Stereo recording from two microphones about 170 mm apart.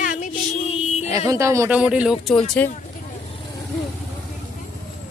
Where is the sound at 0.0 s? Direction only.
50° left (ahead or behind).